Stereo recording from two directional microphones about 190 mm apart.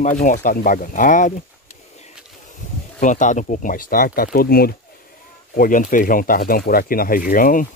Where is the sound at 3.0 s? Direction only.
40° left (ahead or behind).